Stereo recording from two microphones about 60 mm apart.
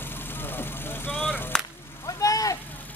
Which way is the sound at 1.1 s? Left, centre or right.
Centre.